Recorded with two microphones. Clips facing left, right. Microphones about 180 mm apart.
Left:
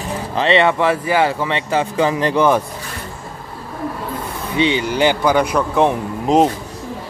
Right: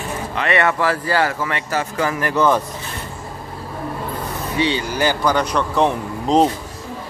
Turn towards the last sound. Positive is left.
turn(degrees=5)  # may be behind; listen again after turning